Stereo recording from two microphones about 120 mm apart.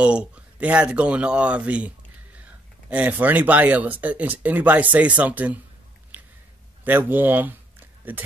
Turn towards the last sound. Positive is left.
turn(degrees=-15)  # may be behind; listen again after turning